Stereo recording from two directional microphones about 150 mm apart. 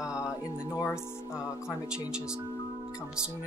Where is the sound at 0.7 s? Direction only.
15° left (ahead or behind).